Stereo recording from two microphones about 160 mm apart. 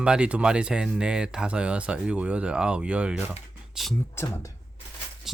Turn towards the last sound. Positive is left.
turn(degrees=-5)  # may be behind; listen again after turning